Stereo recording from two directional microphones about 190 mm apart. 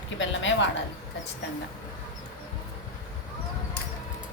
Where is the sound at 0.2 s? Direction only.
75° left (ahead or behind).